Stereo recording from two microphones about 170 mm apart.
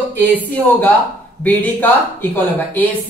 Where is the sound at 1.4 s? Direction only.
10° left (ahead or behind).